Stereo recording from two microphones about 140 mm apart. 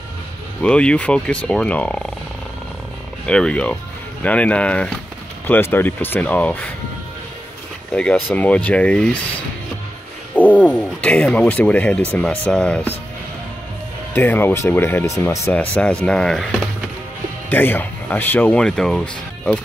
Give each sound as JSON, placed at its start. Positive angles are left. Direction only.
{"t": 0.6, "sound": "speech", "side_deg": 5}
{"t": 3.3, "sound": "speech", "side_deg": 5}
{"t": 7.9, "sound": "speech", "side_deg": 10}
{"t": 10.3, "sound": "speech", "side_deg": 10}
{"t": 14.1, "sound": "speech", "side_deg": 15}
{"t": 15.7, "sound": "speech", "side_deg": 10}
{"t": 17.5, "sound": "speech", "side_deg": 15}